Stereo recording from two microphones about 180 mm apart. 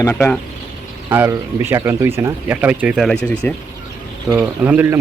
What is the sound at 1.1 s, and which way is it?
Speech, 10° right (ahead or behind).